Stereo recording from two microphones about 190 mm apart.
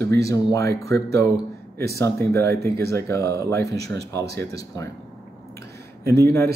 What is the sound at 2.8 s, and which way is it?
Speech, 60° right (ahead or behind).